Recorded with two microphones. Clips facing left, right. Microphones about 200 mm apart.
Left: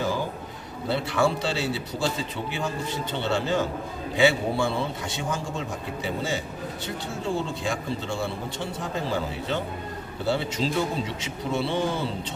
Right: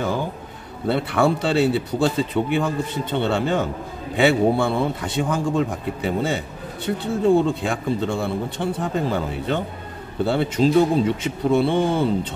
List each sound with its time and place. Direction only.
0.8 s a man's voice: 55° right (ahead or behind)